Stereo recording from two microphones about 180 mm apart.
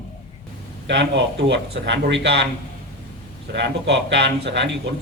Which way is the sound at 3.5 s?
75° right (ahead or behind).